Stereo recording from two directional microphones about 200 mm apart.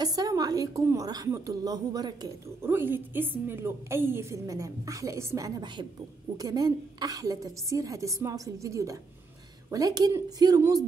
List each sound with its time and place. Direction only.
0.0 s a woman's voice: 20° right (ahead or behind)